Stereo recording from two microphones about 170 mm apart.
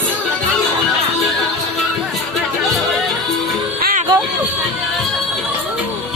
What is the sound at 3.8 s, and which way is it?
Music, 55° right (ahead or behind).